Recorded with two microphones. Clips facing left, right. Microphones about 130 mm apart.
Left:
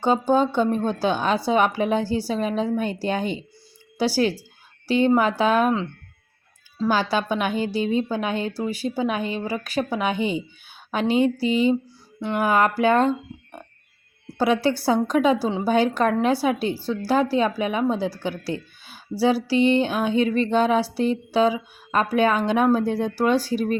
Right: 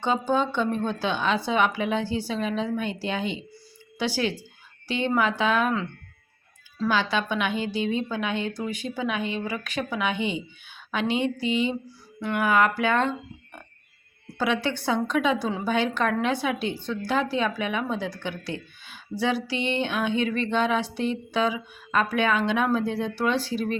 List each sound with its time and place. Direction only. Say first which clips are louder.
0.0 s a woman's voice: left 5 dB; 40° left (ahead or behind)
6.7 s a woman's voice: left 3 dB; 35° left (ahead or behind)